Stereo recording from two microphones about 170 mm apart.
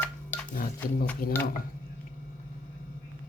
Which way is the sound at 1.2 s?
60° left (ahead or behind).